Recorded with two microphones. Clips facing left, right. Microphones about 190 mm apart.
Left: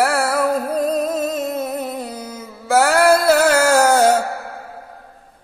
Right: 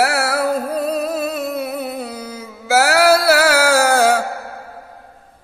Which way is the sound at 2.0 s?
70° right (ahead or behind).